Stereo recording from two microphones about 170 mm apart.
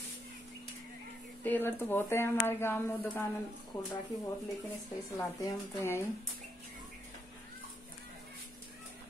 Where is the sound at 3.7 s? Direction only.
25° left (ahead or behind).